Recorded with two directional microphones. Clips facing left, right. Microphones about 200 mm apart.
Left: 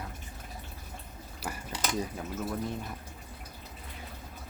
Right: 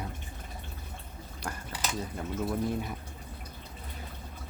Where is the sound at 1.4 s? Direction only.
5° left (ahead or behind).